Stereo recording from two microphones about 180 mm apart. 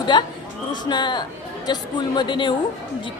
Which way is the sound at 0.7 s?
25° left (ahead or behind).